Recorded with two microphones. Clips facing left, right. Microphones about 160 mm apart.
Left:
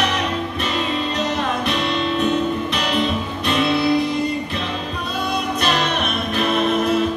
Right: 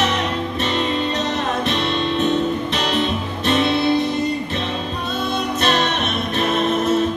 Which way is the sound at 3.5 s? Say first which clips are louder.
Right 1 dB; 30° right (ahead or behind).